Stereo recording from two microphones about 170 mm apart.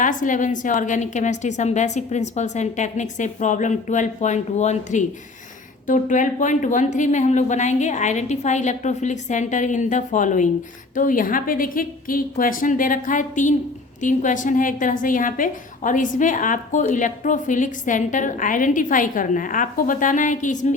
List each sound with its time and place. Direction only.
0.0 s a woman's voice: 50° left (ahead or behind)